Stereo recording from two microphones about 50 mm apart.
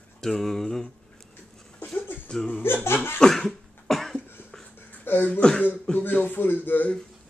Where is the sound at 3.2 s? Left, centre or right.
Centre.